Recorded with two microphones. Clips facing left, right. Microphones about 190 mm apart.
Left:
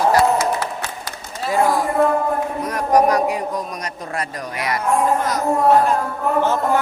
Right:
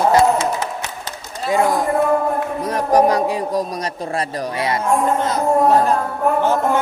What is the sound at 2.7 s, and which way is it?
Speech, 30° right (ahead or behind).